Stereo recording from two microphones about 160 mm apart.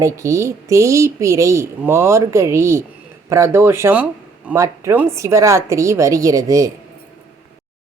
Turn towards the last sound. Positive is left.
turn(degrees=-20)  # may be behind; listen again after turning